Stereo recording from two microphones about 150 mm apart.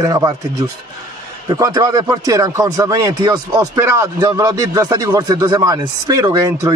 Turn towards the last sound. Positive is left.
turn(degrees=-25)  # may be behind; listen again after turning